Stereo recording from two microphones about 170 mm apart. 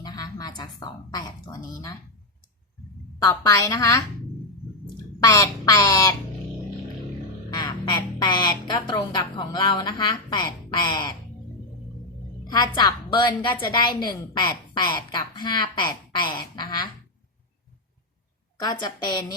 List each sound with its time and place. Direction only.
0.0 s a sound: 25° left (ahead or behind)
3.2 s a woman's voice: 20° left (ahead or behind)
5.2 s a woman's voice: 20° left (ahead or behind)
7.5 s a woman's voice: 25° left (ahead or behind)
12.5 s a woman's voice: 25° left (ahead or behind)
18.6 s a woman's voice: 25° left (ahead or behind)